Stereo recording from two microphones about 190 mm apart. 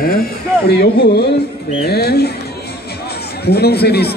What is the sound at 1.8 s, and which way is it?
Speech, 55° left (ahead or behind).